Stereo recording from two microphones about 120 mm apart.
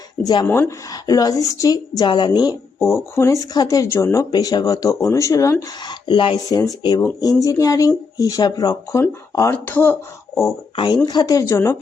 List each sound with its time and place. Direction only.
0.2 s a woman's voice: 35° left (ahead or behind)
0.4 s speech: 15° left (ahead or behind)
0.9 s a woman's voice: 30° left (ahead or behind)
5.8 s a woman's voice: 40° left (ahead or behind); by 10.5 s 20° left (ahead or behind)
10.8 s a woman's voice: 35° left (ahead or behind)